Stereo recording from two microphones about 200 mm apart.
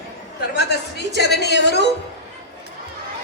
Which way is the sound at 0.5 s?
55° left (ahead or behind).